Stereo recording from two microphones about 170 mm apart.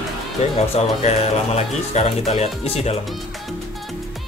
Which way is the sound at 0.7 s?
40° left (ahead or behind).